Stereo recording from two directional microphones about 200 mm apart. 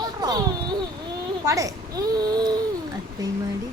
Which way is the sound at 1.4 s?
15° right (ahead or behind).